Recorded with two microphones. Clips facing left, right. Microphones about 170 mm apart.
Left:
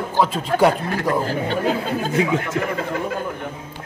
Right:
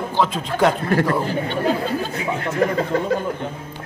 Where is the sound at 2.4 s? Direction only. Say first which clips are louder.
Right 4 dB; 35° right (ahead or behind).